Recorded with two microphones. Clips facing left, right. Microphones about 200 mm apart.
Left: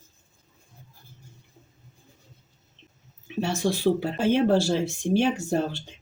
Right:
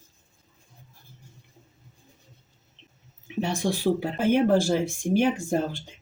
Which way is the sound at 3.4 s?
15° right (ahead or behind).